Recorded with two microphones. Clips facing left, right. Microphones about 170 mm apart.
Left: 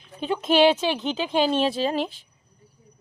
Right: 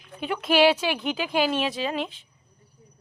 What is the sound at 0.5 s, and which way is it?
Speech, 5° right (ahead or behind).